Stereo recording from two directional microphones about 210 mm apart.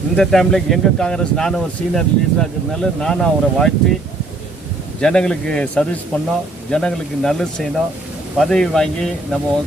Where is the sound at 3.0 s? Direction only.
5° left (ahead or behind).